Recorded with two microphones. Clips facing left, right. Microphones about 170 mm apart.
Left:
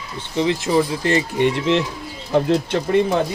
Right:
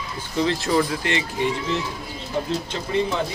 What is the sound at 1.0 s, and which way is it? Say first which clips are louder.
Speech: left 6 dB; 40° left (ahead or behind).